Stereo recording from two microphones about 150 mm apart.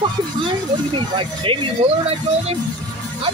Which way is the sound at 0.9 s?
35° right (ahead or behind).